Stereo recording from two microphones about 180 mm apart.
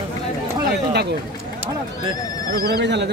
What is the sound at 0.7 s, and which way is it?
Speech, 65° right (ahead or behind).